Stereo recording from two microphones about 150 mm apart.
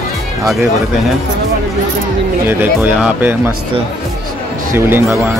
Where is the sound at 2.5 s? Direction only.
15° right (ahead or behind).